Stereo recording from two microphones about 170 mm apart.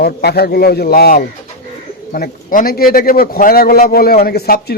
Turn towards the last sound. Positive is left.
turn(degrees=65)  # may be behind; listen again after turning